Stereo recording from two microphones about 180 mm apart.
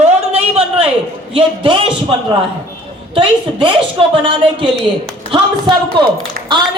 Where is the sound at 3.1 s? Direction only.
30° right (ahead or behind).